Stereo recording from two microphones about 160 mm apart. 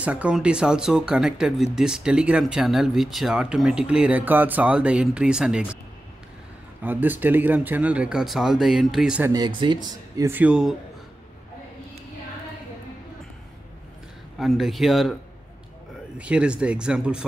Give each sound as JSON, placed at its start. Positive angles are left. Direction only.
{"t": 0.0, "sound": "speech", "side_deg": -10}
{"t": 6.8, "sound": "speech", "side_deg": -10}
{"t": 9.8, "sound": "speech", "side_deg": -20}
{"t": 14.4, "sound": "speech", "side_deg": 0}
{"t": 16.2, "sound": "speech", "side_deg": -5}